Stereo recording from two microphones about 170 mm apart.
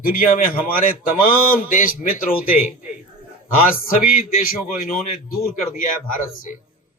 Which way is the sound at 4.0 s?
55° left (ahead or behind).